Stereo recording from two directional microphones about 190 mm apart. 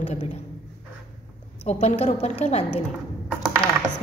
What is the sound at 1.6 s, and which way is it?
A woman's voice, 35° left (ahead or behind).